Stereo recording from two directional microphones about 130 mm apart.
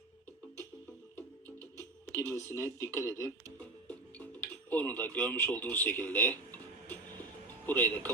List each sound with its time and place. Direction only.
2.1 s speech: 20° left (ahead or behind)
3.6 s music: 10° left (ahead or behind)
4.7 s speech: 15° left (ahead or behind)